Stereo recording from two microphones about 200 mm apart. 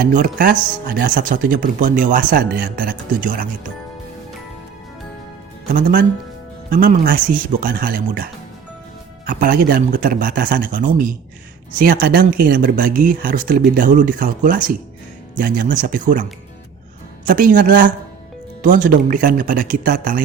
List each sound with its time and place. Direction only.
0.0 s speech: 40° right (ahead or behind)
5.7 s speech: 45° right (ahead or behind)
9.2 s speech: 45° right (ahead or behind)
17.2 s speech: 45° right (ahead or behind)